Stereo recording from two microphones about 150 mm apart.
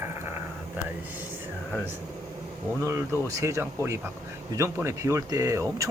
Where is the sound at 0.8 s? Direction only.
10° right (ahead or behind).